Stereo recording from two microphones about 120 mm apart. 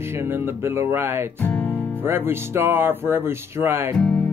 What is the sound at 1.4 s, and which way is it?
Music, 15° left (ahead or behind).